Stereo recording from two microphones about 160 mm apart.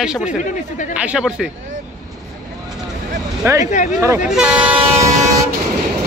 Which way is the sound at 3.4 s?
15° right (ahead or behind).